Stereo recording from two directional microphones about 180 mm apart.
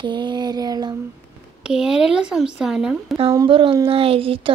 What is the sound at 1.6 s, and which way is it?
Speech, 5° right (ahead or behind).